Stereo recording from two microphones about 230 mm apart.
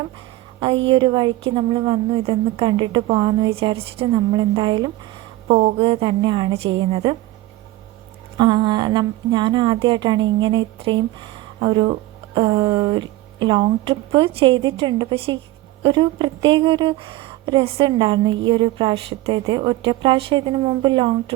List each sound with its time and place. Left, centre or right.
0.6 s speech: right
8.4 s speech: centre